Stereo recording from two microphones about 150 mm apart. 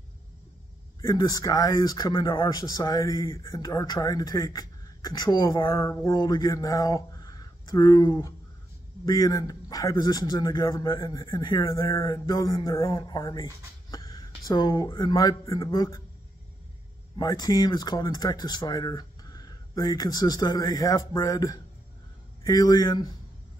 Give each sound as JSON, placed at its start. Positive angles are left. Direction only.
{"t": 1.0, "sound": "a man's voice", "side_deg": 25}
{"t": 5.8, "sound": "a man's voice", "side_deg": 20}
{"t": 17.2, "sound": "a man's voice", "side_deg": 25}